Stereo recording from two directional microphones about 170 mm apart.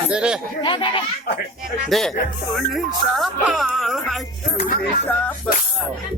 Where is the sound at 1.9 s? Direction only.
Centre (ahead or behind).